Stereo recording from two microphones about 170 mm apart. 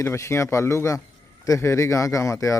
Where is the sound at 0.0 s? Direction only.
15° left (ahead or behind).